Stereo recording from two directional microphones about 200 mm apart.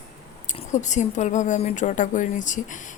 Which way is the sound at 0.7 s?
35° left (ahead or behind).